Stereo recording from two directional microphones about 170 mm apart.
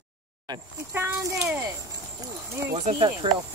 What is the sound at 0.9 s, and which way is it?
Speech, 15° right (ahead or behind).